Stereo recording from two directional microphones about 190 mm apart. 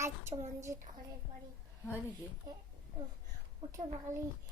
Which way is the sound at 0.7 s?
45° right (ahead or behind).